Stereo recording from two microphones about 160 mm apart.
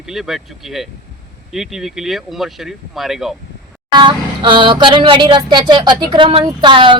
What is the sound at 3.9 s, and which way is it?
Speech, 30° right (ahead or behind).